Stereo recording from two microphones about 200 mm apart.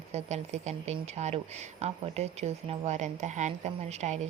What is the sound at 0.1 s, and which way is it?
Speech, 35° right (ahead or behind).